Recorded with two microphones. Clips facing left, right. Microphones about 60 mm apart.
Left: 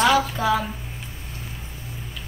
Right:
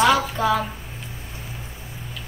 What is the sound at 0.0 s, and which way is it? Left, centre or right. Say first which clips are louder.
Speech: right 1 dB; centre.